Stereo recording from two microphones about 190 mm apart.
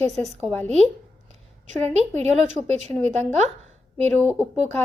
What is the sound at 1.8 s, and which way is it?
A woman's voice, 35° right (ahead or behind).